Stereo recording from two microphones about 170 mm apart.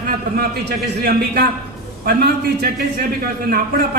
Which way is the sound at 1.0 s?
65° right (ahead or behind).